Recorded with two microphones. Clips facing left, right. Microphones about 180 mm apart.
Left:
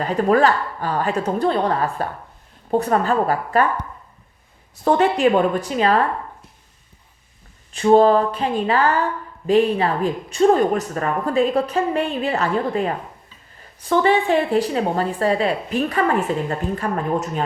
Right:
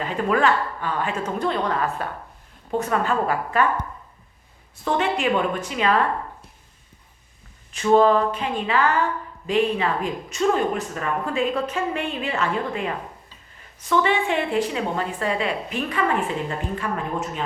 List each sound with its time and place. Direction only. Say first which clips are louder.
0.0 s a woman's voice: left 5 dB; 40° left (ahead or behind)
4.8 s a woman's voice: left 7 dB; 40° left (ahead or behind)
7.7 s a woman's voice: left 3 dB; 35° left (ahead or behind)